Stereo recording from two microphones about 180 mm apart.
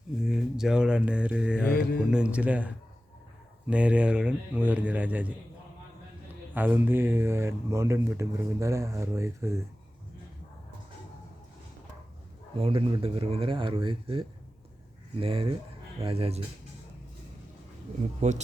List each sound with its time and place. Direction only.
0.2 s speech: centre (ahead or behind)
1.7 s speech: 55° left (ahead or behind)
2.0 s speech: 5° right (ahead or behind)
6.5 s speech: 10° right (ahead or behind)
12.5 s speech: 30° right (ahead or behind)
18.2 s speech: 40° right (ahead or behind)